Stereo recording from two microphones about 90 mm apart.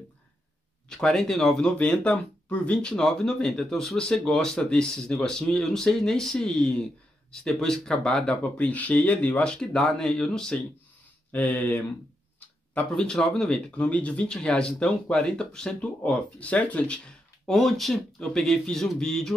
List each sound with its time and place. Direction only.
0.8 s speech: 5° left (ahead or behind)
11.3 s speech: 20° left (ahead or behind)
12.9 s speech: 5° left (ahead or behind)
17.5 s speech: 5° left (ahead or behind)